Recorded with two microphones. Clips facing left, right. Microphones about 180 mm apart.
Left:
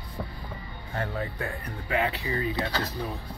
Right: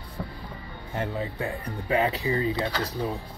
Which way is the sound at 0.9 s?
20° right (ahead or behind).